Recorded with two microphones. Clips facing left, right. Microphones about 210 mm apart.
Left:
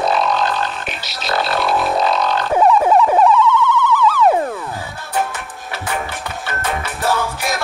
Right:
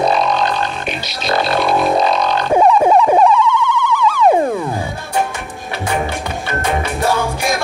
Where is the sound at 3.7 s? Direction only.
15° right (ahead or behind).